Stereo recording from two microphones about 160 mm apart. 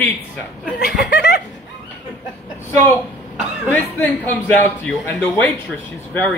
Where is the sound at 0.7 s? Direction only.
90° left.